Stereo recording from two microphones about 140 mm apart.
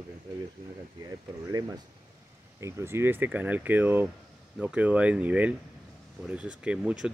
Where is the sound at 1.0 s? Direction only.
25° right (ahead or behind).